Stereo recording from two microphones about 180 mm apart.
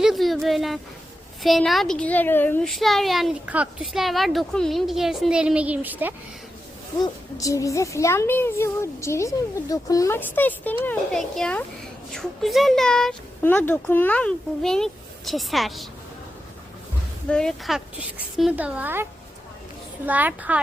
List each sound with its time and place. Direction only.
0.0 s a child's voice: centre (ahead or behind)
7.0 s a child's voice: 20° left (ahead or behind); by 15.9 s centre (ahead or behind)
17.2 s a child's voice: 5° left (ahead or behind)
20.1 s a woman's voice: 10° right (ahead or behind)